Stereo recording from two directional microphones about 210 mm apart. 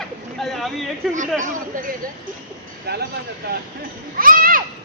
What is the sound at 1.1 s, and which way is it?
Speech, 35° right (ahead or behind).